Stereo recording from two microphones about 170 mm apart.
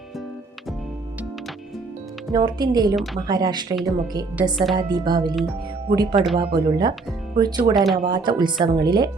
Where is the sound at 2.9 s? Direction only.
Centre (ahead or behind).